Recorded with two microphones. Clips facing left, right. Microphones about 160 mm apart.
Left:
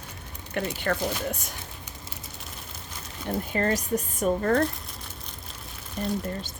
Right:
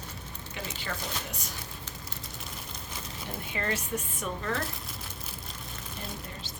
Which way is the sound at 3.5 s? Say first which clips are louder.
Left 6 dB; 40° left (ahead or behind).